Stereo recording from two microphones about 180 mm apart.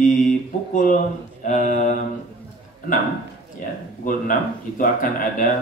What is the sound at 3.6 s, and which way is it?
Speech, 45° left (ahead or behind).